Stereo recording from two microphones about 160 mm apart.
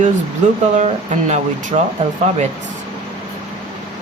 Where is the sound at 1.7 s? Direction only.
45° right (ahead or behind).